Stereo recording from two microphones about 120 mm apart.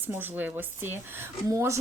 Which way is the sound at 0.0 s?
15° right (ahead or behind).